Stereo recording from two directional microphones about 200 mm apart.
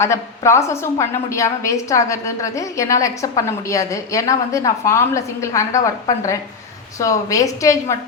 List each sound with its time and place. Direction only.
0.0 s a woman's voice: 15° left (ahead or behind)